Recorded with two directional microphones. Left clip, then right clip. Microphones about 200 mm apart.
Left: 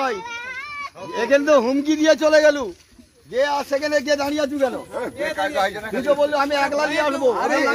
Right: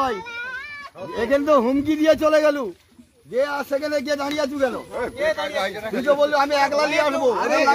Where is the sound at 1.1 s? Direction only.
65° right (ahead or behind); by 4.7 s 50° right (ahead or behind).